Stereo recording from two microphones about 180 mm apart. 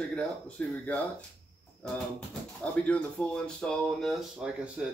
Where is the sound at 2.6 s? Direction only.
5° left (ahead or behind).